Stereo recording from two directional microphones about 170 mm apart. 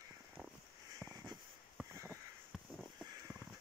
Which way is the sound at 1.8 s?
10° right (ahead or behind).